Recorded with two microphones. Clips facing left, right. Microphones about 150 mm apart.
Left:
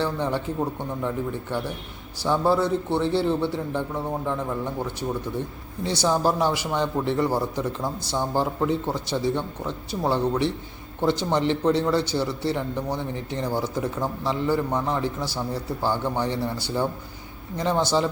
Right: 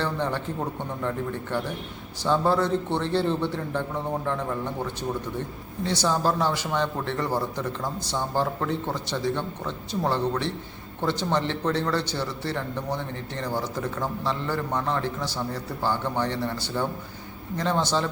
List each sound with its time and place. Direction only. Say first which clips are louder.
0.0 s a man's voice: left 2 dB; 10° left (ahead or behind)
5.8 s a man's voice: left 2 dB; 10° left (ahead or behind)